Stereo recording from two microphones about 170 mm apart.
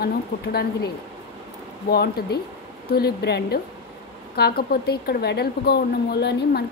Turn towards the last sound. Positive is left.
turn(degrees=75)  # may be behind; listen again after turning